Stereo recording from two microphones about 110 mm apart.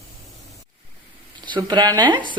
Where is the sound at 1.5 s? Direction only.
40° right (ahead or behind).